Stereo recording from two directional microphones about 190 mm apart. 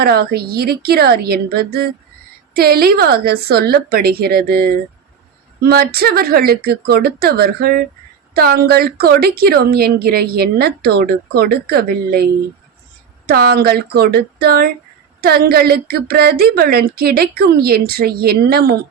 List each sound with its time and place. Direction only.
0.0 s a woman's voice: 55° right (ahead or behind)